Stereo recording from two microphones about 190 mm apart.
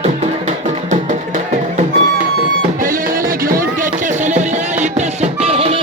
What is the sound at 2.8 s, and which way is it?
Music, 45° right (ahead or behind).